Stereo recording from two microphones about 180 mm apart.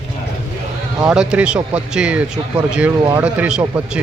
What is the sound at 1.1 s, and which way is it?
Speech, 5° right (ahead or behind).